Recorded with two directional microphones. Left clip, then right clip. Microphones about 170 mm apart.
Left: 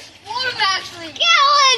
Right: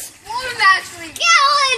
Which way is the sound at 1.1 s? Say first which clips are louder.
Even; 75° right (ahead or behind).